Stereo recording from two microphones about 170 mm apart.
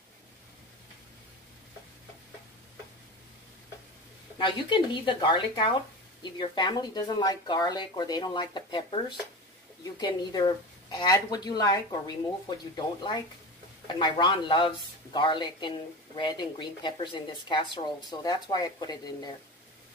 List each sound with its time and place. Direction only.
4.4 s speech: 25° left (ahead or behind)